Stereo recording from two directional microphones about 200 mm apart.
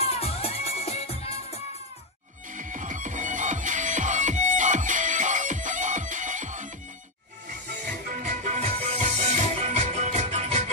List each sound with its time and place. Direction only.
0.0 s music: 30° left (ahead or behind)
2.5 s music: 40° right (ahead or behind)
7.8 s music: 40° right (ahead or behind)